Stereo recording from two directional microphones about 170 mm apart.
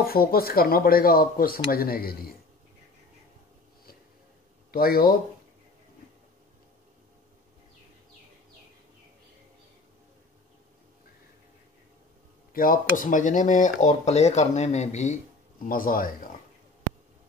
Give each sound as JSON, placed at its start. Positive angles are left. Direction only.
{"t": 0.0, "sound": "speech", "side_deg": 60}
{"t": 4.6, "sound": "speech", "side_deg": 60}
{"t": 12.5, "sound": "speech", "side_deg": 55}
{"t": 15.7, "sound": "speech", "side_deg": 55}